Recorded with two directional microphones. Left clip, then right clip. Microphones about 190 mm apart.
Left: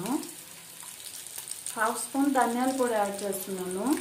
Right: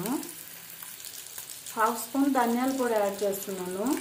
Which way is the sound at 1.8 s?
10° right (ahead or behind).